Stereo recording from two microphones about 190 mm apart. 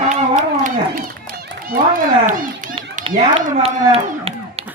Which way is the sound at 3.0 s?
40° right (ahead or behind).